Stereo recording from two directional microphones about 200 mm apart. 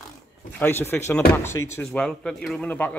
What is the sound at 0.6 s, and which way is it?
Speech, 10° left (ahead or behind).